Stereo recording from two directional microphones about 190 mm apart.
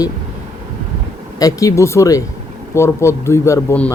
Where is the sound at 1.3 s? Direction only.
20° left (ahead or behind).